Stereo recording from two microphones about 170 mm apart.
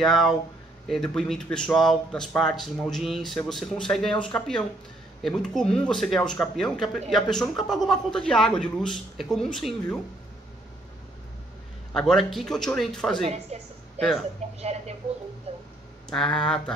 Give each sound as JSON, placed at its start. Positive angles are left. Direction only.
{"t": 0.0, "sound": "speech", "side_deg": 0}
{"t": 11.9, "sound": "speech", "side_deg": 5}
{"t": 13.3, "sound": "a woman's voice", "side_deg": -40}
{"t": 16.1, "sound": "speech", "side_deg": 5}